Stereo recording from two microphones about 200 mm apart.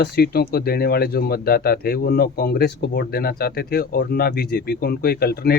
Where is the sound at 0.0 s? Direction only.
50° left (ahead or behind).